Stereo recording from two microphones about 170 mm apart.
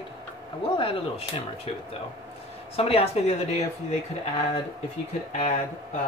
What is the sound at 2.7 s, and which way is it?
Speech, 35° left (ahead or behind).